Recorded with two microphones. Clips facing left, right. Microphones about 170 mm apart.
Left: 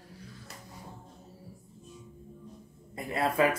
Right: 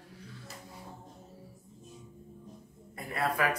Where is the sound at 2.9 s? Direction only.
25° left (ahead or behind).